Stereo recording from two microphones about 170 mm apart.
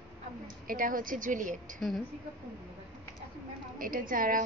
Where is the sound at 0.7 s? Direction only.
55° right (ahead or behind).